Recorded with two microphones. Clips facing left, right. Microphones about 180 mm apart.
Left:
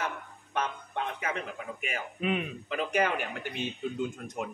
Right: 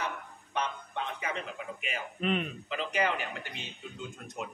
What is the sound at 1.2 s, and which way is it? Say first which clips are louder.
Speech: left 2 dB; 50° left (ahead or behind).